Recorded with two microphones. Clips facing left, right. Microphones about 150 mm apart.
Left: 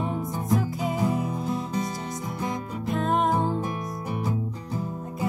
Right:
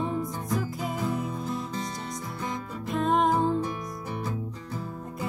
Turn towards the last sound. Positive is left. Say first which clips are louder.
# even
turn(degrees=0)  # may be behind; listen again after turning